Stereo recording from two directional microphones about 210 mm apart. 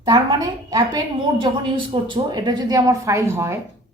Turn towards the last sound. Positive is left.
turn(degrees=-10)  # may be behind; listen again after turning